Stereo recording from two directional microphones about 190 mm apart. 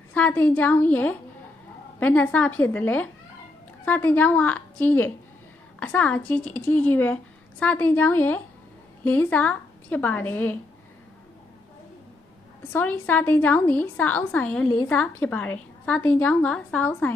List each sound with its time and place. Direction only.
0.1 s a woman's voice: 10° left (ahead or behind)
12.7 s a woman's voice: 10° left (ahead or behind)
14.7 s a woman's voice: 15° left (ahead or behind)